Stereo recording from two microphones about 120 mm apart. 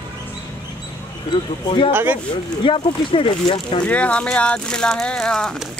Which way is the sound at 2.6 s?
45° left (ahead or behind).